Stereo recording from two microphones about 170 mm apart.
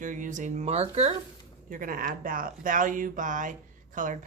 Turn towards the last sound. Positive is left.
turn(degrees=-50)  # may be behind; listen again after turning